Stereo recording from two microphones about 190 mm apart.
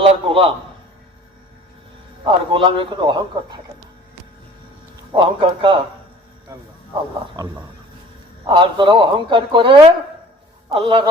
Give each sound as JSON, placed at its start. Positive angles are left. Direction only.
{"t": 0.0, "sound": "a sound", "side_deg": -30}
{"t": 2.2, "sound": "speech", "side_deg": -25}
{"t": 5.1, "sound": "speech", "side_deg": -25}